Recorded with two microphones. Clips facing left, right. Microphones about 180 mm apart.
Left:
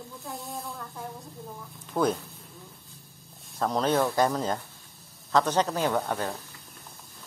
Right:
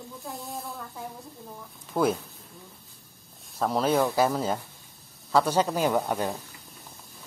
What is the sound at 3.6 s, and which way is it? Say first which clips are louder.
Speech: right 1 dB; 5° right (ahead or behind).